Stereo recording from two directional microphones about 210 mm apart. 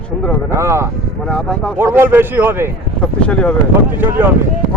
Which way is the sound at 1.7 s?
10° right (ahead or behind).